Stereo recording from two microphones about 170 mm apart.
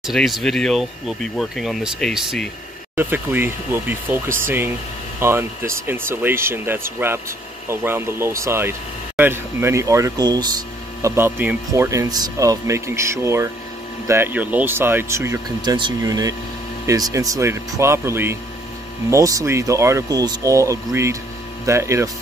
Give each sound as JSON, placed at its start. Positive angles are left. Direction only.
{"t": 0.0, "sound": "speech", "side_deg": 0}
{"t": 3.0, "sound": "speech", "side_deg": -10}